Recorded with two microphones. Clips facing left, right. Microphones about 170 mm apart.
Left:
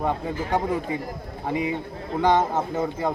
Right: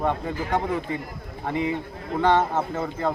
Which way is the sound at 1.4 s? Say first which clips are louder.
Even; 15° left (ahead or behind).